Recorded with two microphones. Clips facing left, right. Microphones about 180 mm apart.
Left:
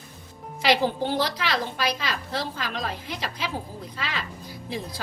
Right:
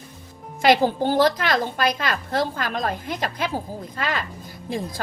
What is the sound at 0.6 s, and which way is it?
A woman's voice, 45° right (ahead or behind).